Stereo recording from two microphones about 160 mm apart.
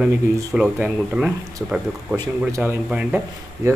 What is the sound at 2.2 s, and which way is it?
Speech, 20° right (ahead or behind).